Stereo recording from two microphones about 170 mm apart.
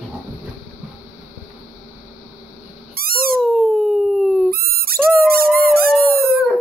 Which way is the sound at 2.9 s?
60° right (ahead or behind).